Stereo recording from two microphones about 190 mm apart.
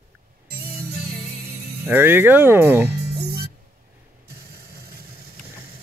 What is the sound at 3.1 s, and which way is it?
Music, 55° right (ahead or behind).